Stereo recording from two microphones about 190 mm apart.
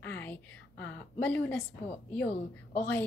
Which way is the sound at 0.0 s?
10° left (ahead or behind).